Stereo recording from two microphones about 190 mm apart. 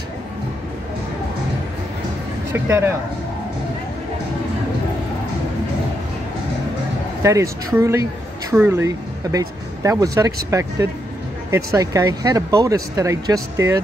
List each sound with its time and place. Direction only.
2.5 s speech: 10° right (ahead or behind)
7.7 s a woman's voice: 15° right (ahead or behind)